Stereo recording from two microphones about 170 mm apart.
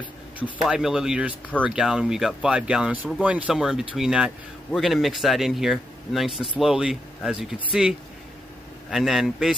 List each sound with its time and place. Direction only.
0.4 s speech: 5° right (ahead or behind)
8.9 s speech: centre (ahead or behind)